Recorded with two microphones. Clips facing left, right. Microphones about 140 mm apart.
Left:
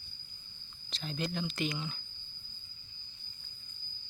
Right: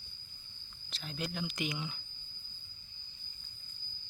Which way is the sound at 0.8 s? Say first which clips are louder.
Left 3 dB; 5° right (ahead or behind).